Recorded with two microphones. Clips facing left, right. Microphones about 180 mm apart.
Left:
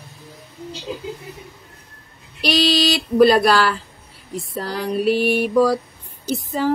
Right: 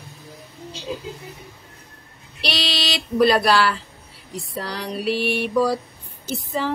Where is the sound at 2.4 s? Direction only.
50° left (ahead or behind).